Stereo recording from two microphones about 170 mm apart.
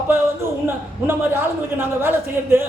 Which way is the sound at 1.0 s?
15° right (ahead or behind).